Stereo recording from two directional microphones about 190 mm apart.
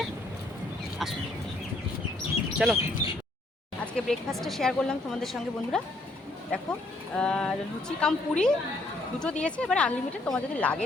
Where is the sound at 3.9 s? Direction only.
Centre (ahead or behind).